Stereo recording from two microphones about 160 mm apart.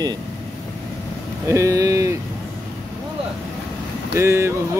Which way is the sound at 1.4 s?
20° right (ahead or behind).